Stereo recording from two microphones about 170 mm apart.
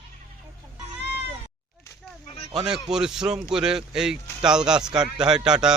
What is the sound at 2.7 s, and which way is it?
A man's voice, 5° right (ahead or behind).